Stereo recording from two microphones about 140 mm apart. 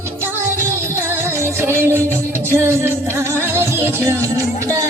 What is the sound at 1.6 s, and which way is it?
Music, 15° right (ahead or behind).